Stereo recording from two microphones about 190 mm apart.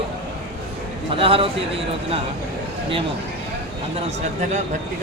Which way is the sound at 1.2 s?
30° right (ahead or behind).